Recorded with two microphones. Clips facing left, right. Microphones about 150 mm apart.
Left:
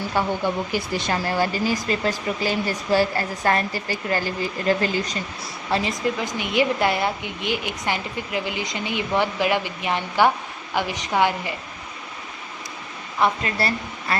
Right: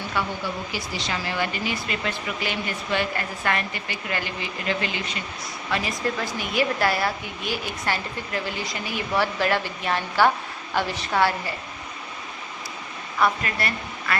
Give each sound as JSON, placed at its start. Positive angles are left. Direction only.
{"t": 0.1, "sound": "speech", "side_deg": 45}
{"t": 5.7, "sound": "a woman's voice", "side_deg": 25}
{"t": 13.1, "sound": "speech", "side_deg": 25}